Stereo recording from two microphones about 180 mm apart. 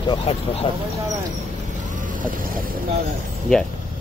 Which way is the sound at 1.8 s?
45° right (ahead or behind).